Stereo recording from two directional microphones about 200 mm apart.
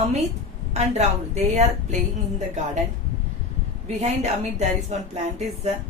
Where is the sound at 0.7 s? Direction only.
35° right (ahead or behind).